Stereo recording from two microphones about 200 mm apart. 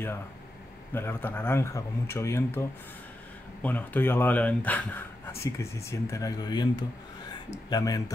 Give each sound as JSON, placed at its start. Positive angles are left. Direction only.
{"t": 0.9, "sound": "speech", "side_deg": 10}
{"t": 3.6, "sound": "speech", "side_deg": 10}